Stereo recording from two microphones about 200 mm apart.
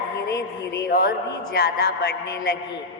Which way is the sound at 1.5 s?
50° left (ahead or behind).